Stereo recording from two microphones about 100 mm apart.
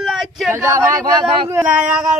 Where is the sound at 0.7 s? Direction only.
35° right (ahead or behind).